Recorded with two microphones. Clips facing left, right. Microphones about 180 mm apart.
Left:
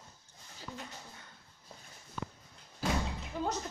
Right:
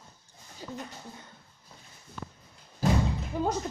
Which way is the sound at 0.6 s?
20° right (ahead or behind).